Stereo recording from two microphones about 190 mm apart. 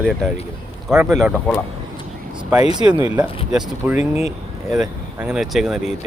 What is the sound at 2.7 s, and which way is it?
Speech, 20° right (ahead or behind).